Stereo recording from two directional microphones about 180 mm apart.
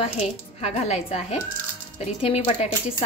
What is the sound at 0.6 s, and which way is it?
A woman's voice, 35° left (ahead or behind).